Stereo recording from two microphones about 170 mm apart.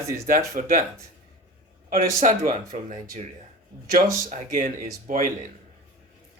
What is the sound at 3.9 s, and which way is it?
A man's voice, 55° right (ahead or behind).